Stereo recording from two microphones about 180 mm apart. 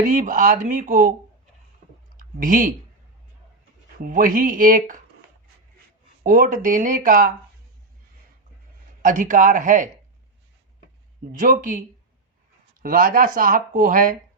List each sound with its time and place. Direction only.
0.0 s speech: 45° right (ahead or behind)
2.1 s a sound: 50° right (ahead or behind)
4.0 s speech: 50° right (ahead or behind)
6.2 s speech: 50° right (ahead or behind)
9.0 s speech: 45° right (ahead or behind)
11.3 s speech: 50° right (ahead or behind)
12.8 s speech: 50° right (ahead or behind)